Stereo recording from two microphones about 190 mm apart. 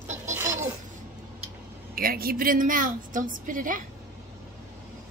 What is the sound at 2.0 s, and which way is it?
A woman's voice, 50° right (ahead or behind).